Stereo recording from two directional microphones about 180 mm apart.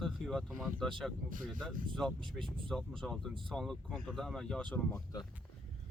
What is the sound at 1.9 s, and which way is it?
Speech, 5° left (ahead or behind).